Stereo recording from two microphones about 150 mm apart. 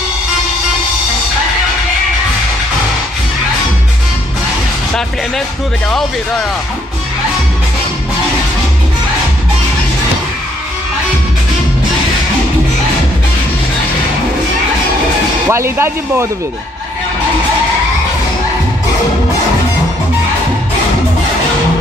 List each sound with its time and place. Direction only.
15.5 s speech: 15° right (ahead or behind)